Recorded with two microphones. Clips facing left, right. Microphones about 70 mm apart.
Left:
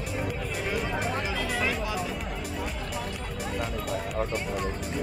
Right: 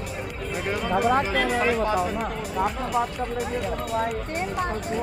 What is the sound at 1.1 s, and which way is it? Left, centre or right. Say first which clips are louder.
Speech: right 8 dB; right.